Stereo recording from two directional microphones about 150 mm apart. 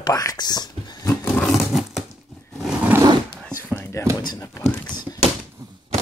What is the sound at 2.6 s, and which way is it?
Zipper, 5° right (ahead or behind).